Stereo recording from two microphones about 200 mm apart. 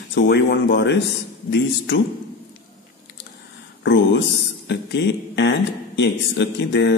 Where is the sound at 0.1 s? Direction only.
60° left (ahead or behind).